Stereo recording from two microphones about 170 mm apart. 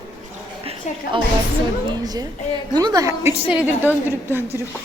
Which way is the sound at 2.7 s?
20° right (ahead or behind).